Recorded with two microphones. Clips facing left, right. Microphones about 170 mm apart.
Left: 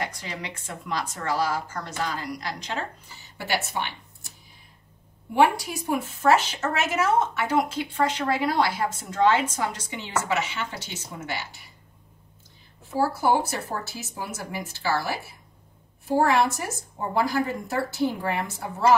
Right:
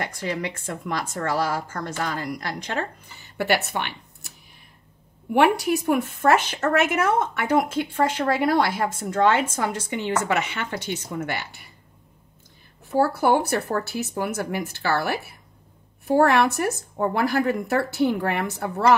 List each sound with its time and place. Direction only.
0.0 s a woman's voice: 55° right (ahead or behind)
5.3 s speech: 65° right (ahead or behind)
12.9 s speech: 60° right (ahead or behind)